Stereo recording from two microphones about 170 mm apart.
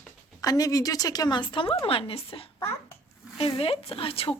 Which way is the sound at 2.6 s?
15° left (ahead or behind).